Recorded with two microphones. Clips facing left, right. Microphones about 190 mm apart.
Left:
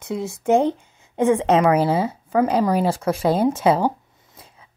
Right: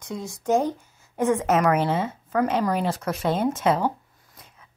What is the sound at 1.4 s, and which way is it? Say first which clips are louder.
A woman's voice: left 4 dB; 30° left (ahead or behind).